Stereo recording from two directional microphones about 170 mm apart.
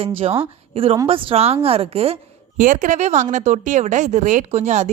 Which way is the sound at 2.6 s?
50° right (ahead or behind).